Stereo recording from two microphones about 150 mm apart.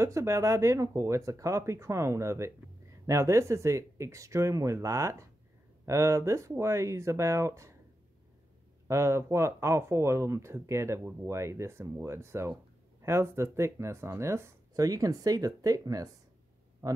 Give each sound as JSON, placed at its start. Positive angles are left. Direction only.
{"t": 0.0, "sound": "speech", "side_deg": -20}
{"t": 8.8, "sound": "speech", "side_deg": -20}